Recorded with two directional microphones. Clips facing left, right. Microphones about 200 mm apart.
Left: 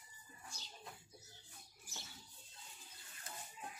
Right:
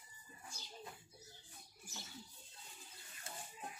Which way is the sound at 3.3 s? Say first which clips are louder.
Right 1 dB; 30° right (ahead or behind).